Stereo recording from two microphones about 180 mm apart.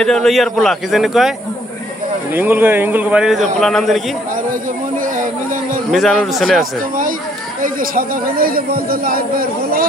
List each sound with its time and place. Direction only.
0.0 s speech: centre (ahead or behind)
2.3 s a man's voice: 10° right (ahead or behind)
5.0 s a sound: 45° right (ahead or behind)
5.9 s speech: centre (ahead or behind)
7.6 s speech: 50° right (ahead or behind)